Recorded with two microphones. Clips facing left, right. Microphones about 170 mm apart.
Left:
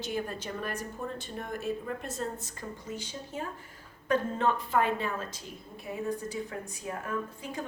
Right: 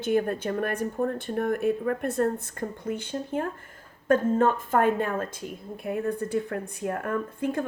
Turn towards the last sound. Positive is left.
turn(degrees=-55)  # may be behind; listen again after turning